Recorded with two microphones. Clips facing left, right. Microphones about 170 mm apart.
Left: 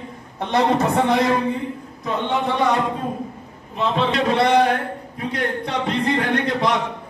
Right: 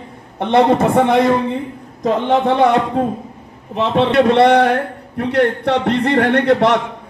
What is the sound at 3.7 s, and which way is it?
A man's voice, 65° right (ahead or behind).